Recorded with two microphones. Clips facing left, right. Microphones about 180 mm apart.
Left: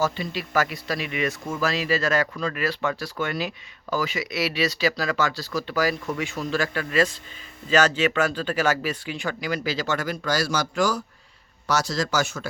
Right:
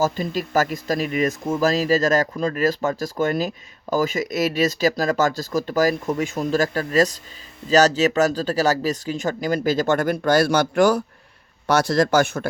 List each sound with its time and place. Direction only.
0.0 s speech: 45° right (ahead or behind)